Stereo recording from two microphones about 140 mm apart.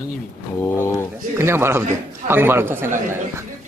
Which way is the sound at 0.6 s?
20° left (ahead or behind).